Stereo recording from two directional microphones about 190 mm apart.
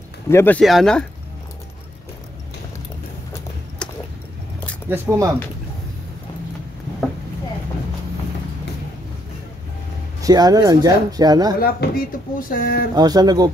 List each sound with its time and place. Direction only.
0.3 s speech: 15° left (ahead or behind)
0.6 s speech: centre (ahead or behind)
3.8 s a sound: 5° left (ahead or behind)
4.8 s speech: 15° right (ahead or behind)
10.2 s speech: 20° right (ahead or behind)
11.6 s speech: 50° left (ahead or behind)
12.9 s speech: 20° right (ahead or behind)